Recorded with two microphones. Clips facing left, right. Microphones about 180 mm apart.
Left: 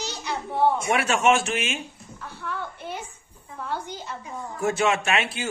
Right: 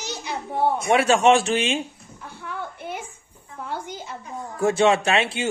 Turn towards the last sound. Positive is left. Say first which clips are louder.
# right 4 dB
turn(degrees=-30)  # may be behind; listen again after turning